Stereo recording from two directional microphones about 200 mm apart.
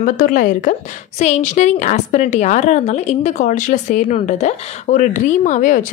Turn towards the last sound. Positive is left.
turn(degrees=40)  # may be behind; listen again after turning